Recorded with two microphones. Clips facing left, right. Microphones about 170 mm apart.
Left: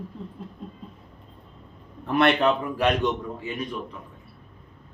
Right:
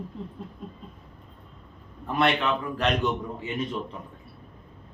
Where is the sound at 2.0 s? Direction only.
70° left (ahead or behind).